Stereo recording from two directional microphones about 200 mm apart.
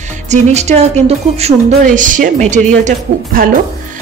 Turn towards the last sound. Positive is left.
turn(degrees=-40)  # may be behind; listen again after turning